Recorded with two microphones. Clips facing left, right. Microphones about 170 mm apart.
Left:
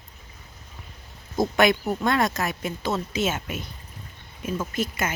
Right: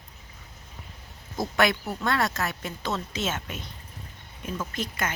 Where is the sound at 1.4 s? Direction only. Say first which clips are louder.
Left 4 dB; 20° left (ahead or behind).